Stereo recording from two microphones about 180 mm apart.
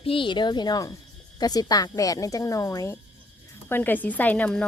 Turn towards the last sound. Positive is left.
turn(degrees=5)  # may be behind; listen again after turning